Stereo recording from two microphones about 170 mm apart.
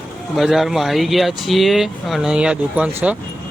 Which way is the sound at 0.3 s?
Centre (ahead or behind).